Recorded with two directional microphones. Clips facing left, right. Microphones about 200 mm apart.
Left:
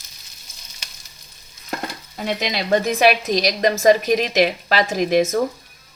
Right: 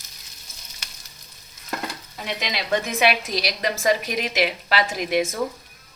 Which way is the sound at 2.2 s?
40° left (ahead or behind).